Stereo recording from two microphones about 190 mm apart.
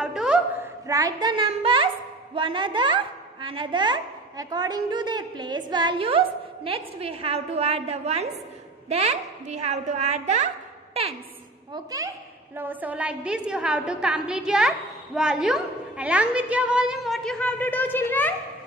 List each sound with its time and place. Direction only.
0.0 s a sound: 5° right (ahead or behind)
0.8 s a woman's voice: 20° right (ahead or behind); by 10.5 s 40° right (ahead or behind)
11.7 s a child's voice: 20° right (ahead or behind); by 18.3 s 10° left (ahead or behind)